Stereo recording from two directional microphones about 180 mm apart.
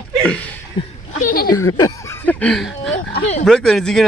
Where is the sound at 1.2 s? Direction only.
50° left (ahead or behind).